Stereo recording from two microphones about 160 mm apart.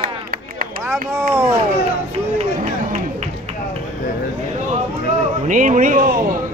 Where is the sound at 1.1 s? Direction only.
20° right (ahead or behind).